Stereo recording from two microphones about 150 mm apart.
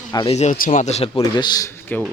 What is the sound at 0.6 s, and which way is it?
Speech, 60° left (ahead or behind).